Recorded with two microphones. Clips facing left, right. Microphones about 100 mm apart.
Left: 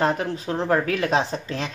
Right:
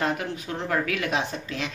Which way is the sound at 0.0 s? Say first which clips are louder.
Left 5 dB; 35° left (ahead or behind).